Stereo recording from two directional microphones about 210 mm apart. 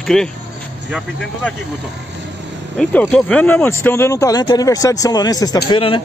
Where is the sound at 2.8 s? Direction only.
5° left (ahead or behind).